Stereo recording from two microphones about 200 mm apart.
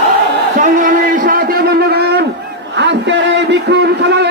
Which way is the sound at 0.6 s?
40° right (ahead or behind).